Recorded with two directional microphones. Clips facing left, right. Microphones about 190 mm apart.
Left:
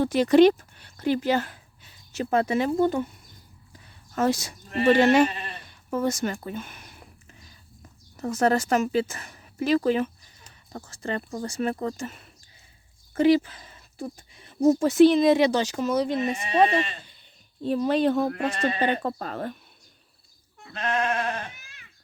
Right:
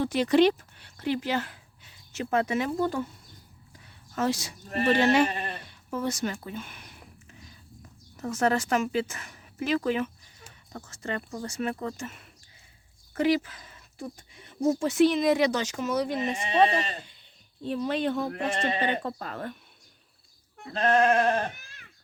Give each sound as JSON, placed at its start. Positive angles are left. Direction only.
{"t": 0.0, "sound": "a woman's voice", "side_deg": 45}
{"t": 4.1, "sound": "speech", "side_deg": 50}
{"t": 5.3, "sound": "speech", "side_deg": -50}
{"t": 5.9, "sound": "a sound", "side_deg": 45}
{"t": 8.1, "sound": "speech", "side_deg": 35}
{"t": 16.6, "sound": "speech", "side_deg": -40}
{"t": 17.6, "sound": "speech", "side_deg": 40}
{"t": 18.3, "sound": "speech", "side_deg": -25}
{"t": 19.2, "sound": "speech", "side_deg": 35}
{"t": 20.7, "sound": "speech", "side_deg": -35}